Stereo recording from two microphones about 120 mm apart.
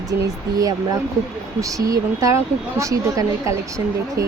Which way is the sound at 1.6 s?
30° right (ahead or behind).